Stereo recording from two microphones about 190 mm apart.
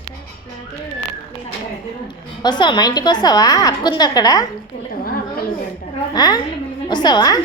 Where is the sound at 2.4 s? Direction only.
25° left (ahead or behind).